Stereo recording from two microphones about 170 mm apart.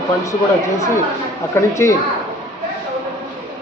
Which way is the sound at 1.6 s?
15° left (ahead or behind).